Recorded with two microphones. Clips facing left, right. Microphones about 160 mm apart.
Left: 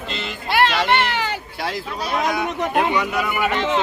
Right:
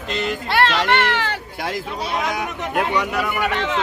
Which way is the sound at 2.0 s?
20° right (ahead or behind).